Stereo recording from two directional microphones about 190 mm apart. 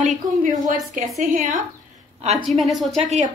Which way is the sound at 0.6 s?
45° right (ahead or behind).